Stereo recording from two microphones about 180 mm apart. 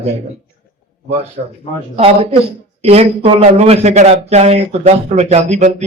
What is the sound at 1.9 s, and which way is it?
A man's voice, 35° right (ahead or behind).